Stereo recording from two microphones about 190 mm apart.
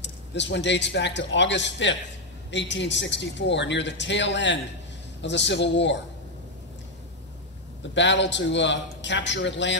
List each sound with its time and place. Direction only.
0.0 s speech: 65° left (ahead or behind)
7.9 s speech: 70° left (ahead or behind)